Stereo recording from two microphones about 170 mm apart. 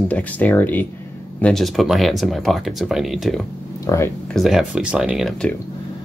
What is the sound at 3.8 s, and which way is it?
Speech, 20° left (ahead or behind).